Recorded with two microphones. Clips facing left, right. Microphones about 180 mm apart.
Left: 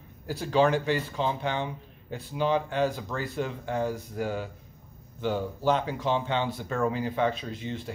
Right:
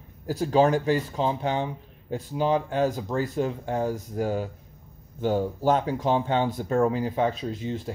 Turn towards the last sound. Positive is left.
turn(degrees=-40)  # may be behind; listen again after turning